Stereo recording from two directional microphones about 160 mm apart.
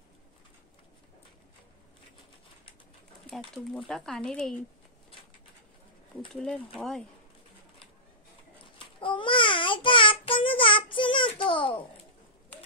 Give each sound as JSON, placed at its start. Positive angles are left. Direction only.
{"t": 3.3, "sound": "speech", "side_deg": 0}
{"t": 6.4, "sound": "speech", "side_deg": 5}
{"t": 8.6, "sound": "babbling", "side_deg": 30}